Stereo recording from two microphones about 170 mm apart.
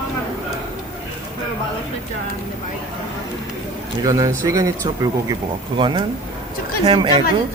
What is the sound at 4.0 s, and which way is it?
A woman's voice, 20° right (ahead or behind).